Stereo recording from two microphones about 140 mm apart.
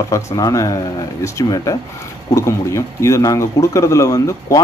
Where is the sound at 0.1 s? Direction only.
25° left (ahead or behind).